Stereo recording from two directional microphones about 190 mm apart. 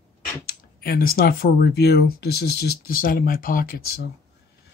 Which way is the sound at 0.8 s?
50° left (ahead or behind).